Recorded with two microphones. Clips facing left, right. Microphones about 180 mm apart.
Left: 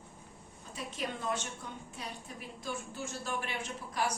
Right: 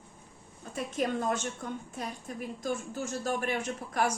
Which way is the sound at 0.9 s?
45° right (ahead or behind).